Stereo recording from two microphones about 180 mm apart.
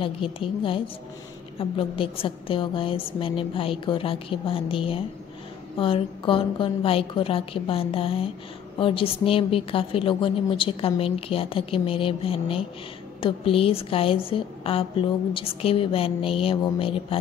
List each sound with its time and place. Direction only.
0.0 s a woman's voice: 30° left (ahead or behind)